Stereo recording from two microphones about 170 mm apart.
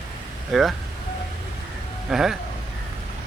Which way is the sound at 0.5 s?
Centre (ahead or behind).